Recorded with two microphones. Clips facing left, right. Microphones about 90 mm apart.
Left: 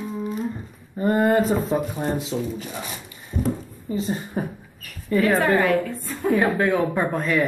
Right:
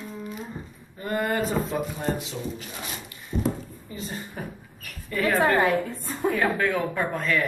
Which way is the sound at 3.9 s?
25° left (ahead or behind).